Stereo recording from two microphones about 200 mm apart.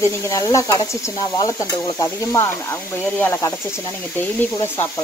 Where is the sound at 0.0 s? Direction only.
15° left (ahead or behind).